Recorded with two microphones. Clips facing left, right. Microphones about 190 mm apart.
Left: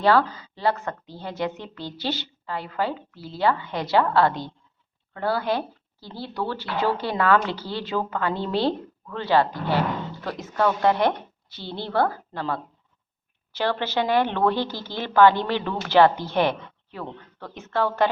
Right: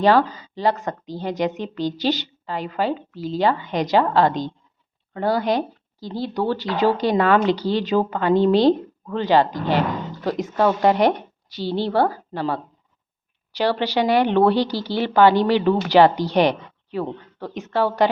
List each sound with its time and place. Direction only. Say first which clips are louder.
0.0 s a woman's voice: right 3 dB; 15° right (ahead or behind)